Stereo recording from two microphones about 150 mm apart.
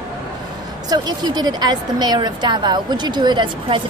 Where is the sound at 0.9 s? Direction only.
30° right (ahead or behind).